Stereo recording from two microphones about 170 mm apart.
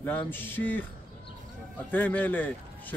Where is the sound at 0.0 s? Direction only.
10° left (ahead or behind).